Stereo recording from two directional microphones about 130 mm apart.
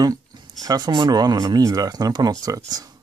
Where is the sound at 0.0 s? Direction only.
30° right (ahead or behind).